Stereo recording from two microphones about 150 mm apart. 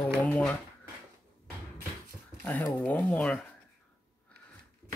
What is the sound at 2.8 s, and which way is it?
Speech, 10° left (ahead or behind).